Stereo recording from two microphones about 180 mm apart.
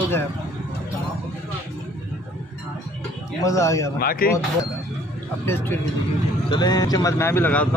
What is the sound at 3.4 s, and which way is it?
Speech, 15° left (ahead or behind).